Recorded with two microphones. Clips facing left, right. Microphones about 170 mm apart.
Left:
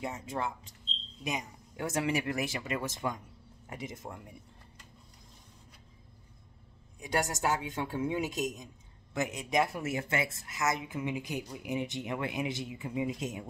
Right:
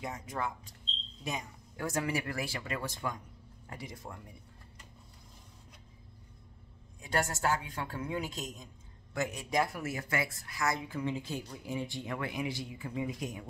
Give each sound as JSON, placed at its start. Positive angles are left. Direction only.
{"t": 0.0, "sound": "speech", "side_deg": 25}
{"t": 7.0, "sound": "speech", "side_deg": 20}